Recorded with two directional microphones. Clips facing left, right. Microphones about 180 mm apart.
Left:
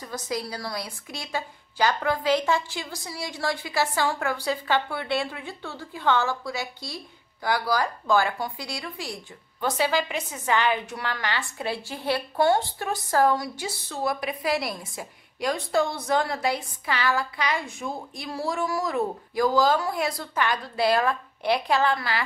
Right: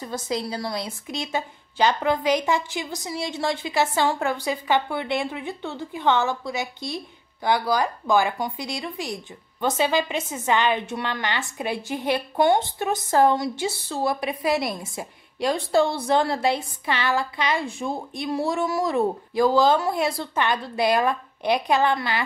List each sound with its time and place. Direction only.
0.0 s speech: 25° right (ahead or behind)